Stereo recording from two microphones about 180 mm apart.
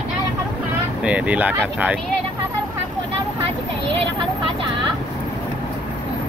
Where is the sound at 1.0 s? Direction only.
5° right (ahead or behind).